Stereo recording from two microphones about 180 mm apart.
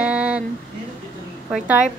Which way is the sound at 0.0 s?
5° right (ahead or behind).